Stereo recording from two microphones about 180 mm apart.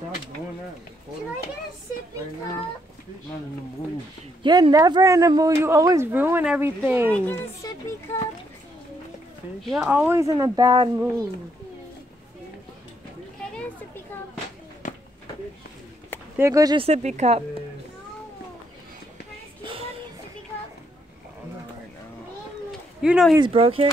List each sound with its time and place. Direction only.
4.4 s a man's voice: 25° right (ahead or behind)
7.2 s speech: 15° left (ahead or behind)
9.6 s a man's voice: centre (ahead or behind); by 10.9 s 20° right (ahead or behind)
14.8 s a sound: 45° left (ahead or behind)
16.3 s speech: 15° right (ahead or behind)
16.8 s speech: 40° right (ahead or behind)
23.0 s speech: 5° right (ahead or behind)
23.3 s speech: 30° right (ahead or behind)